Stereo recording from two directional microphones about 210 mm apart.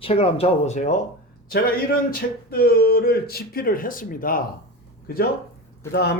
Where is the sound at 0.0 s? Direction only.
30° left (ahead or behind).